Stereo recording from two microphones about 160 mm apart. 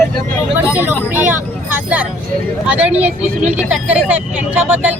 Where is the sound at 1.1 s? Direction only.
15° right (ahead or behind).